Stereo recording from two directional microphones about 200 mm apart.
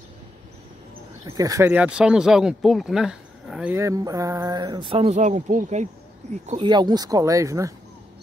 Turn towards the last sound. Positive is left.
turn(degrees=-15)  # may be behind; listen again after turning